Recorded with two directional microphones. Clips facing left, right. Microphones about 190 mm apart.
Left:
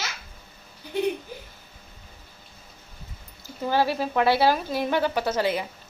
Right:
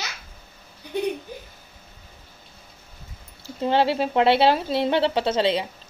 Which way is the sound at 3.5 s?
25° right (ahead or behind).